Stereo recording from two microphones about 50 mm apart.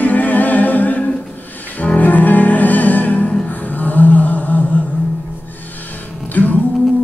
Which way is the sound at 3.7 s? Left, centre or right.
Left.